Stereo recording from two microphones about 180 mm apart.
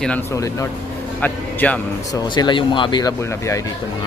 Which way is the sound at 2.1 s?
25° left (ahead or behind).